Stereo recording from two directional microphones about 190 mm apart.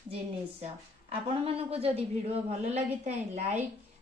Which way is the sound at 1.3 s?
30° right (ahead or behind).